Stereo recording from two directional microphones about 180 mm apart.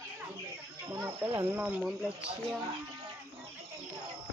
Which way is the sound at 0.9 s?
15° right (ahead or behind).